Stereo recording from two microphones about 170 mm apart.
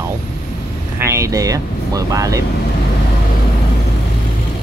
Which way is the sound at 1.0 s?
15° right (ahead or behind).